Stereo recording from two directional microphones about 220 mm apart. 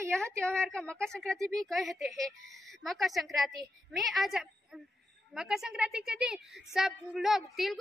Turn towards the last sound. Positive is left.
turn(degrees=0)  # may be behind; listen again after turning